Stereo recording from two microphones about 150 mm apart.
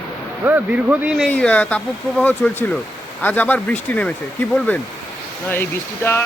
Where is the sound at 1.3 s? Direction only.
10° left (ahead or behind).